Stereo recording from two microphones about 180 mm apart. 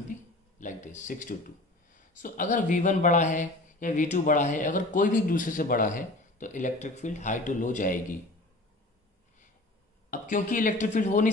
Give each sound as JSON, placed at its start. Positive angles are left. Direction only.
{"t": 0.6, "sound": "speech", "side_deg": 45}
{"t": 10.1, "sound": "speech", "side_deg": 45}